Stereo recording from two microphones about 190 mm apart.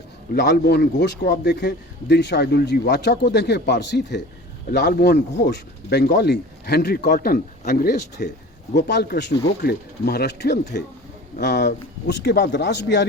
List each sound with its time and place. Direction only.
0.3 s a man's voice: 60° left (ahead or behind)